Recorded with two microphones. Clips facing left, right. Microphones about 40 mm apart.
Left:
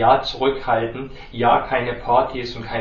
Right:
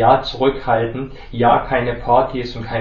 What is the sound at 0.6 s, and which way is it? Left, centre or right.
Speech, right.